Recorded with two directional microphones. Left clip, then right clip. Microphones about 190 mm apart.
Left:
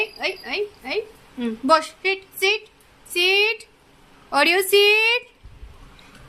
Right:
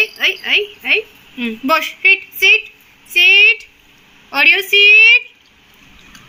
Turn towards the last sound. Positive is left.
turn(degrees=25)  # may be behind; listen again after turning